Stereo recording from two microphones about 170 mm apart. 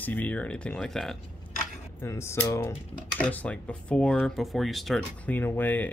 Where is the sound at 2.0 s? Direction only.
15° left (ahead or behind).